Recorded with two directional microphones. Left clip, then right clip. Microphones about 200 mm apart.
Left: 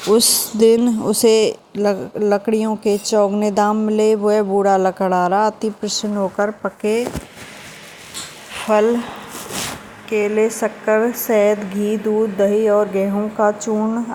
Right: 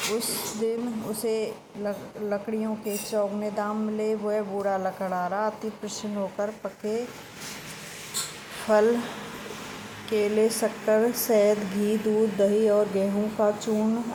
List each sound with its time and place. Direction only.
0.2 s speech: 50° left (ahead or behind)
8.6 s speech: 15° left (ahead or behind)
10.1 s a woman's voice: 20° left (ahead or behind)